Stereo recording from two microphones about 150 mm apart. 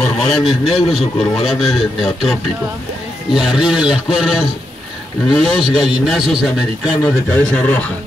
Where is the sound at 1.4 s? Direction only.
Centre (ahead or behind).